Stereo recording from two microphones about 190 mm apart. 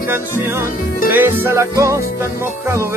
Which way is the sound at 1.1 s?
10° right (ahead or behind).